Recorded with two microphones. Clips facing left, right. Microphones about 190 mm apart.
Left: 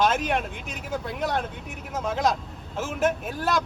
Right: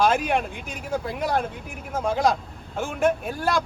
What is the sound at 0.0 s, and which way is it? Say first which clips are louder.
Speech: right 2 dB; centre (ahead or behind).